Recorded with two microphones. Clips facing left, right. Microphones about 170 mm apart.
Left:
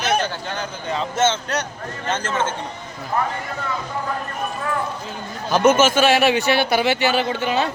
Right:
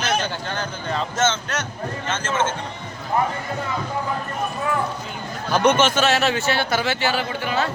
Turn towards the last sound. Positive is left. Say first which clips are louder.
# left 3 dB
turn(degrees=20)  # may be behind; listen again after turning